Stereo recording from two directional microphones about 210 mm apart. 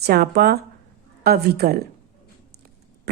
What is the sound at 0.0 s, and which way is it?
A woman's voice, 50° right (ahead or behind).